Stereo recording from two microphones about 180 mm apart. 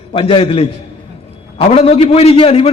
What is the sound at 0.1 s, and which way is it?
A man's voice, 30° left (ahead or behind).